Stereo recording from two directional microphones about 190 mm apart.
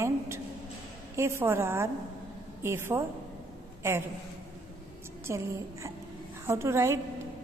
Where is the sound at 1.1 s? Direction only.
15° right (ahead or behind).